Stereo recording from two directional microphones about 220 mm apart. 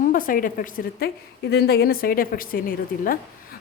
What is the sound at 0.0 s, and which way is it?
A woman's voice, 40° left (ahead or behind).